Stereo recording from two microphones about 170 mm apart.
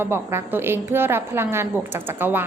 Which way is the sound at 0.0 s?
15° right (ahead or behind).